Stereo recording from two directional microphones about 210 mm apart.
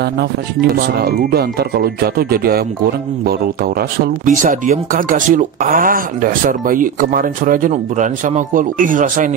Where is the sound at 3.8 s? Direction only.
40° right (ahead or behind).